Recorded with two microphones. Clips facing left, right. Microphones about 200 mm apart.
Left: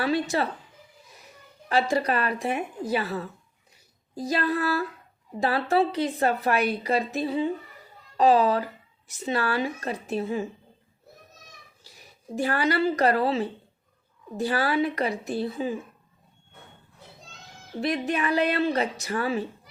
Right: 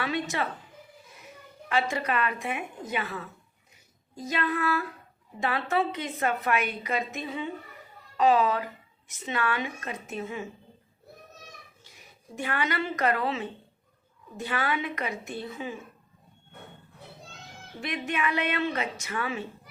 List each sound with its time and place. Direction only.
0.0 s speech: 35° left (ahead or behind)
1.7 s speech: 35° left (ahead or behind)
11.8 s speech: 35° left (ahead or behind)
17.7 s speech: 35° left (ahead or behind)